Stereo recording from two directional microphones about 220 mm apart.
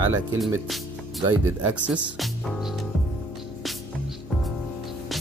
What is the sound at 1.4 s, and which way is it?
Speech, 10° right (ahead or behind).